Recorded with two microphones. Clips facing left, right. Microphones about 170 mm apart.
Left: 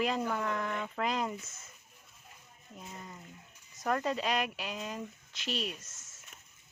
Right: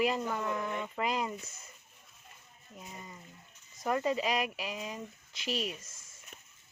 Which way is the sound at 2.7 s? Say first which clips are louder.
Left 1 dB; 5° right (ahead or behind).